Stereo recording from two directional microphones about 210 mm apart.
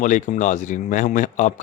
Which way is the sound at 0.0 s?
35° left (ahead or behind).